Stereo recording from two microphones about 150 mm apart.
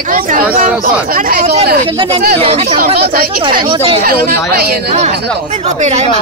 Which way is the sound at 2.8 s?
75° right (ahead or behind).